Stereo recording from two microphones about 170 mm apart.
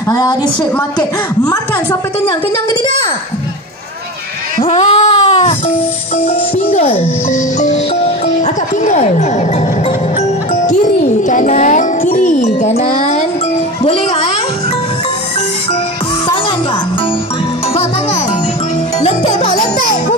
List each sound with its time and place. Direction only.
0.1 s a woman's voice: 20° left (ahead or behind)
4.6 s baby cry: 35° left (ahead or behind)
6.2 s speech: 35° left (ahead or behind)
19.8 s music: 55° left (ahead or behind)